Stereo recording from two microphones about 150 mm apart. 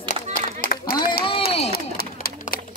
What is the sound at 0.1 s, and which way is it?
Run, 70° left (ahead or behind).